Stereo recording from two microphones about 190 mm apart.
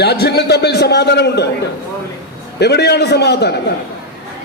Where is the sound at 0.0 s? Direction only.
60° left (ahead or behind).